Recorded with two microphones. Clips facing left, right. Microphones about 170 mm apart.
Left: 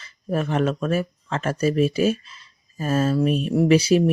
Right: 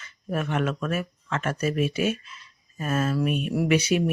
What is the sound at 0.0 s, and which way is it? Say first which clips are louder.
Speech: left 4 dB; 35° left (ahead or behind).